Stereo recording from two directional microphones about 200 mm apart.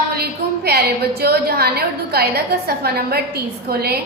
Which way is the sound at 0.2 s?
50° right (ahead or behind).